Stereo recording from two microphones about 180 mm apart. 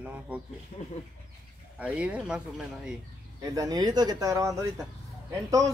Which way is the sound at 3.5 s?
20° right (ahead or behind).